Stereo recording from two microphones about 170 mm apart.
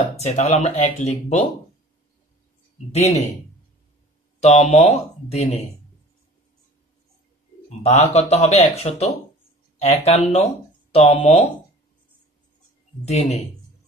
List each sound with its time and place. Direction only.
0.2 s speech: 40° left (ahead or behind)
2.9 s speech: 40° left (ahead or behind)
4.4 s speech: 40° left (ahead or behind)
7.8 s speech: 40° left (ahead or behind)
13.0 s speech: 40° left (ahead or behind)